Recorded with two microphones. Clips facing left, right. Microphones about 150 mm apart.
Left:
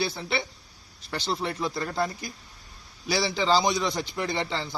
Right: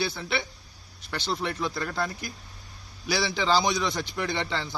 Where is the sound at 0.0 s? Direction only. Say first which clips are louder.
Left 1 dB; 30° left (ahead or behind).